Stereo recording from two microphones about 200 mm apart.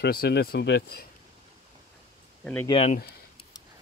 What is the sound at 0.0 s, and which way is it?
Speech, 50° left (ahead or behind).